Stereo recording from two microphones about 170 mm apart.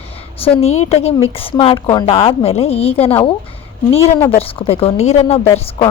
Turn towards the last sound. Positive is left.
turn(degrees=35)  # may be behind; listen again after turning